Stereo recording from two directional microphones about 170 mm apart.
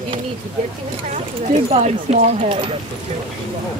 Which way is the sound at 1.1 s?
40° right (ahead or behind).